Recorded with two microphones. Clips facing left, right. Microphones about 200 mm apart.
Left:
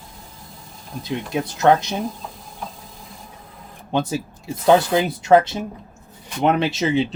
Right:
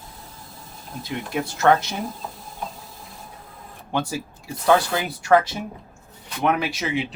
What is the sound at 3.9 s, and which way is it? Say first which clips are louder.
Speech: left 4 dB; 20° left (ahead or behind).